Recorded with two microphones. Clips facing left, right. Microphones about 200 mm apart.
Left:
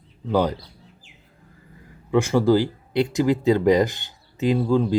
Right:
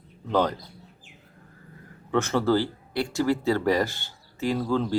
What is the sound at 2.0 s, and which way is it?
Speech, 10° left (ahead or behind).